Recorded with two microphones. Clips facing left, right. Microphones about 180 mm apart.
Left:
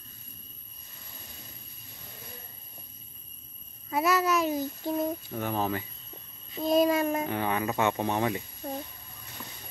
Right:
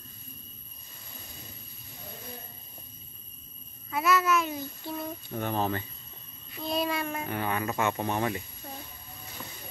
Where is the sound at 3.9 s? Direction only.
35° left (ahead or behind).